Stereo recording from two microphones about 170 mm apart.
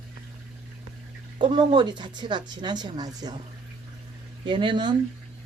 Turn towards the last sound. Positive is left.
turn(degrees=-25)  # may be behind; listen again after turning